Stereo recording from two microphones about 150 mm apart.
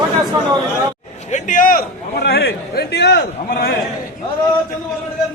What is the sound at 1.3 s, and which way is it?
A man's voice, 60° left (ahead or behind).